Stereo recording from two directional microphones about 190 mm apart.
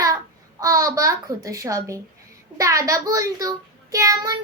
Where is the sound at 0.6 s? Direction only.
15° right (ahead or behind).